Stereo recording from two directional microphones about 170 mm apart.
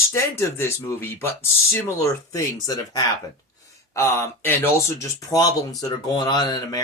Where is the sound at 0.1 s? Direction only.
15° left (ahead or behind).